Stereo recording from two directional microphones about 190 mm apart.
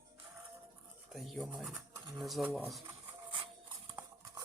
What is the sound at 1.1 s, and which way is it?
Speech, centre (ahead or behind).